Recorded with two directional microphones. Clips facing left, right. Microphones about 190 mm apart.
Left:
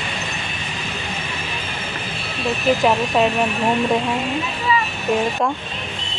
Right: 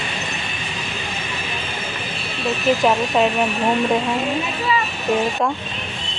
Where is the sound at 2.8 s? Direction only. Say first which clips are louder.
Even; centre (ahead or behind).